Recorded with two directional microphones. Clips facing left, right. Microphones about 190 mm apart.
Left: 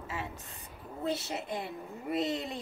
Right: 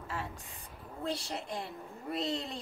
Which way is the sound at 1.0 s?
20° left (ahead or behind).